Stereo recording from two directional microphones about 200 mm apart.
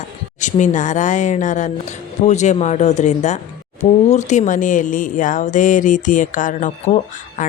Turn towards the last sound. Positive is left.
turn(degrees=40)  # may be behind; listen again after turning